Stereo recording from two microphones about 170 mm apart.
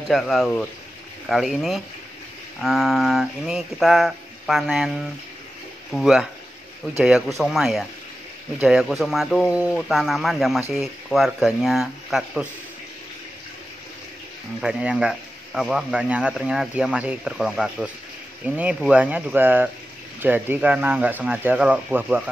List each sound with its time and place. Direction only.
0.1 s speech: centre (ahead or behind)
5.9 s speech: centre (ahead or behind)
14.6 s speech: 5° right (ahead or behind)